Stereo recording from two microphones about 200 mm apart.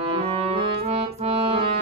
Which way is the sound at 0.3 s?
30° right (ahead or behind).